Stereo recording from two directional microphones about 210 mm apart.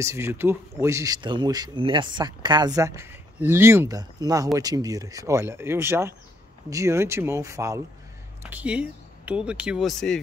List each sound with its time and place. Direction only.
0.0 s speech: 15° right (ahead or behind)